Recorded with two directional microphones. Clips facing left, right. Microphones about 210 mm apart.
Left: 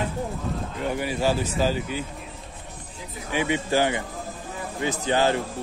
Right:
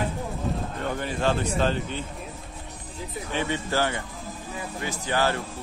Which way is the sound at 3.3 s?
15° left (ahead or behind).